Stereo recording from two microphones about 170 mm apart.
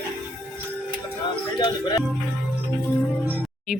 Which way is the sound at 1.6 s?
25° left (ahead or behind).